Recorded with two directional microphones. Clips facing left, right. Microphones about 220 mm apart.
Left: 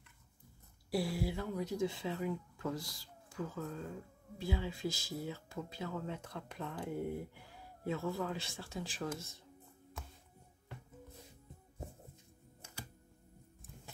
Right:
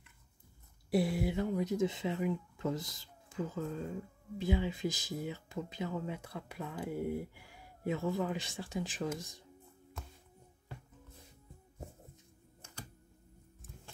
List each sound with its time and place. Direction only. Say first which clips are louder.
0.8 s speech: right 4 dB; 20° right (ahead or behind)